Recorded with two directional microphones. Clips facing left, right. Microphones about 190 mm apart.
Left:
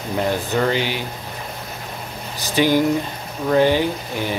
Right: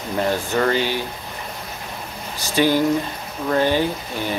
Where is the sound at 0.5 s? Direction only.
15° left (ahead or behind).